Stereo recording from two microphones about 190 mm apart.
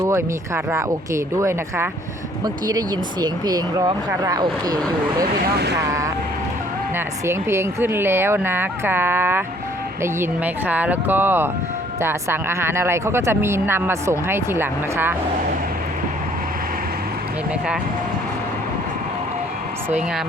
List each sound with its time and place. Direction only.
0.0 s speech: 15° right (ahead or behind)
5.2 s speech: 60° right (ahead or behind)
5.8 s speech: 15° right (ahead or behind)